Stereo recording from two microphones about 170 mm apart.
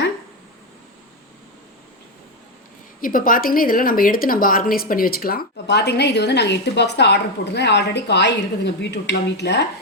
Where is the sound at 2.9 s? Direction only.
55° left (ahead or behind).